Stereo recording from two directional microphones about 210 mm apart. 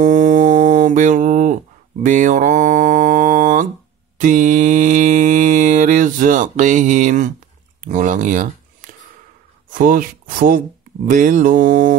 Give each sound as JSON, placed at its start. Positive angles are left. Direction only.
{"t": 0.0, "sound": "mantra", "side_deg": -35}
{"t": 7.8, "sound": "a sound", "side_deg": -35}
{"t": 9.7, "sound": "speech", "side_deg": -40}
{"t": 11.1, "sound": "mantra", "side_deg": -40}